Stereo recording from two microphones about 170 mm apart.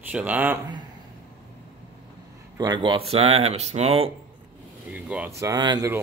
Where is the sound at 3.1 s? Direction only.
35° right (ahead or behind).